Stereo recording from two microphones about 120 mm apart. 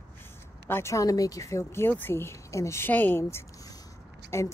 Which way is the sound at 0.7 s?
20° left (ahead or behind).